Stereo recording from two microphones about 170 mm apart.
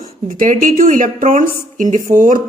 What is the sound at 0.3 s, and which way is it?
A man's voice, 50° right (ahead or behind).